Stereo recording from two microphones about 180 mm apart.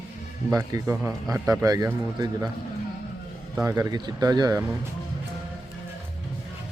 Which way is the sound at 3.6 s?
20° right (ahead or behind).